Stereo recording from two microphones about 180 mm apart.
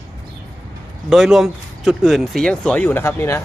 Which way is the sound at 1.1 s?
Centre (ahead or behind).